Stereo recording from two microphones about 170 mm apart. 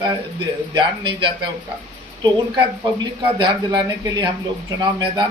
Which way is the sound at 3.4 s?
25° right (ahead or behind).